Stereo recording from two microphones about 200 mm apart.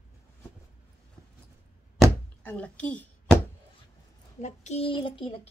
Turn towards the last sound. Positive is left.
turn(degrees=25)  # may be behind; listen again after turning